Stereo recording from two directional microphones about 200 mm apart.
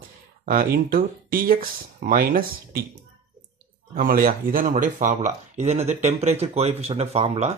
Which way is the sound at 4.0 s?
45° right (ahead or behind).